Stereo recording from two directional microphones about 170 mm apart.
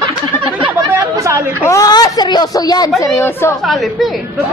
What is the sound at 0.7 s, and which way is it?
Speech, 15° right (ahead or behind).